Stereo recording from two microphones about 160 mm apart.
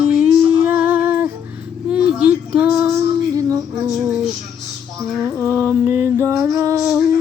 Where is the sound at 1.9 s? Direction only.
5° right (ahead or behind).